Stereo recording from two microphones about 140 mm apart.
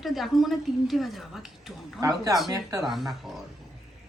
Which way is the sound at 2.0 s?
25° right (ahead or behind).